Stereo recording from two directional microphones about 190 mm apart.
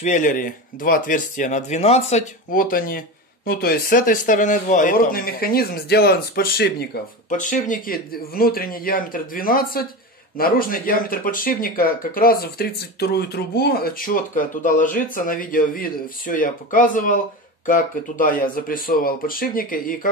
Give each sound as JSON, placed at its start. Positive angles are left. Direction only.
{"t": 0.0, "sound": "speech", "side_deg": 40}
{"t": 7.3, "sound": "speech", "side_deg": 45}